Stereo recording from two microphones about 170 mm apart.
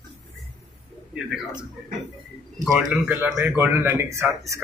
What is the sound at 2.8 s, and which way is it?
Speech, centre (ahead or behind).